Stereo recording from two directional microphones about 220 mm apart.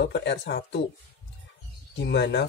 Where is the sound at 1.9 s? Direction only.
50° left (ahead or behind).